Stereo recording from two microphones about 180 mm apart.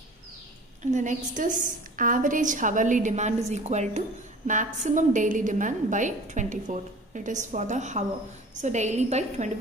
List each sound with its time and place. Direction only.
0.9 s a woman's voice: 45° right (ahead or behind)